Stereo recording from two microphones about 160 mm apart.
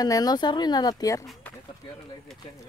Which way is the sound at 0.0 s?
25° left (ahead or behind).